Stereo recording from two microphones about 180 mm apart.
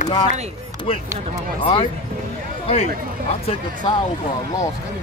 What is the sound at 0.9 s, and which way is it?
Speech, 30° left (ahead or behind).